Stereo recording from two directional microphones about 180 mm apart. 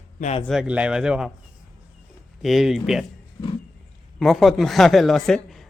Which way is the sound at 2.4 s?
Centre (ahead or behind).